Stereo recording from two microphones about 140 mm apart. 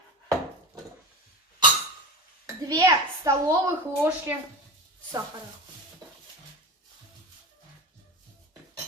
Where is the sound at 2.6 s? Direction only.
25° right (ahead or behind).